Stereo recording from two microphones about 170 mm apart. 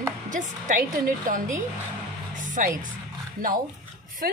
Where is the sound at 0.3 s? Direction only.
45° right (ahead or behind).